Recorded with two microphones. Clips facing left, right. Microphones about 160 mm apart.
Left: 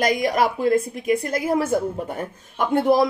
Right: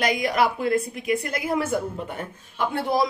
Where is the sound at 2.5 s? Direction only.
50° left (ahead or behind).